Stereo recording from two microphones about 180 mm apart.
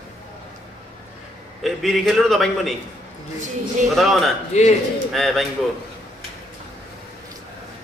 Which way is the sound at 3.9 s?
Centre (ahead or behind).